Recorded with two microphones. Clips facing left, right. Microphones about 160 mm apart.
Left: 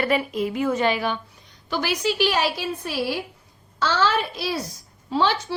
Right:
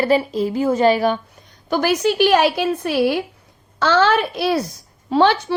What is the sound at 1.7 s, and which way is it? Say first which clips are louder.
A woman's voice: right 7 dB; 50° right (ahead or behind).